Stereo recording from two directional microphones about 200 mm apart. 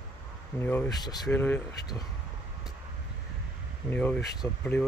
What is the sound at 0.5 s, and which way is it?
Speech, 10° left (ahead or behind).